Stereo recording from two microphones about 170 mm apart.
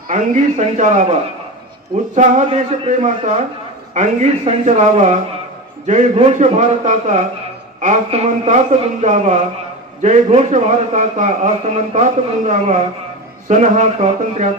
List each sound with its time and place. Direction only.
0.1 s a man's voice: 45° right (ahead or behind)
2.1 s a man's voice: 45° right (ahead or behind)